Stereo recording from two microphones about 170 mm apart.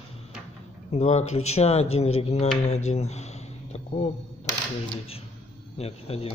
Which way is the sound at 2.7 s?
40° left (ahead or behind).